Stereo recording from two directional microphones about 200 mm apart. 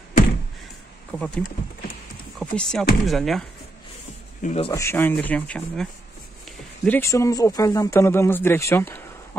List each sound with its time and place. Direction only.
1.1 s speech: 5° left (ahead or behind)
2.5 s speech: 5° left (ahead or behind)
4.4 s speech: 35° left (ahead or behind)
4.6 s speech: 15° left (ahead or behind)